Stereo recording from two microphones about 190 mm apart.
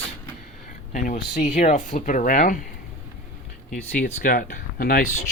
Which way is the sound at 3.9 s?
45° left (ahead or behind).